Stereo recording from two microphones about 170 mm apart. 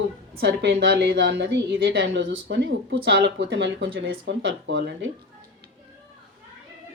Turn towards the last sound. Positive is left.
turn(degrees=-90)